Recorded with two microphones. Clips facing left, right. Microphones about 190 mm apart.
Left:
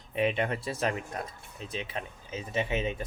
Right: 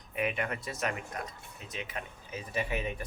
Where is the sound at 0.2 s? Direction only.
30° left (ahead or behind).